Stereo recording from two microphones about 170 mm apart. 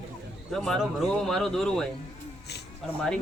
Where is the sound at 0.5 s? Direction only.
Centre (ahead or behind).